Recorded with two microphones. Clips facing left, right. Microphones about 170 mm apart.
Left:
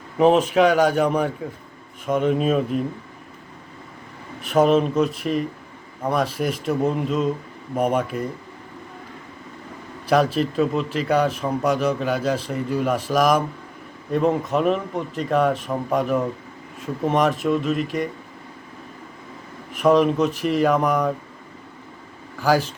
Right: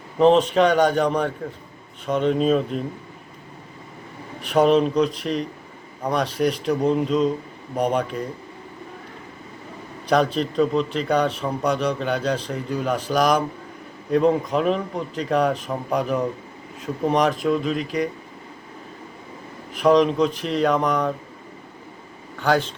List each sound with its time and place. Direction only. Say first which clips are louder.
0.2 s a man's voice: even; 5° left (ahead or behind)
4.4 s a man's voice: even; centre (ahead or behind)
10.1 s a man's voice: left 1 dB; 5° left (ahead or behind)
19.8 s a man's voice: even; 5° left (ahead or behind)
22.4 s a man's voice: left 1 dB; 5° left (ahead or behind)